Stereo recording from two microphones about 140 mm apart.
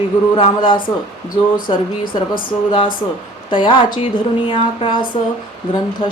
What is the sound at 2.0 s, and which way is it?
Speech, 90° left.